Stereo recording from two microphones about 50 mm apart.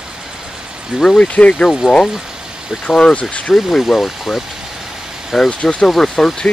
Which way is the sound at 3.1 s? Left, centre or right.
Left.